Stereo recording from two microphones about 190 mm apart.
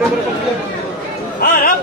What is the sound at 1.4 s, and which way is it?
Speech, 50° left (ahead or behind).